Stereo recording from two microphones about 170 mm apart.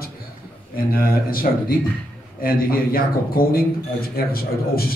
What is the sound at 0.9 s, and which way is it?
Speech, 60° left (ahead or behind).